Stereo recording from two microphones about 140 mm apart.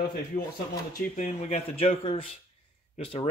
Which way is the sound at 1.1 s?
55° left (ahead or behind).